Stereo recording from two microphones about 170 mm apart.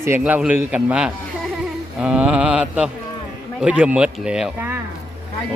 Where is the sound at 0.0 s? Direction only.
10° right (ahead or behind).